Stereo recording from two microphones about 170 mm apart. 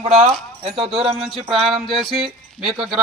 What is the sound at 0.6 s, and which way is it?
Speech, 35° right (ahead or behind).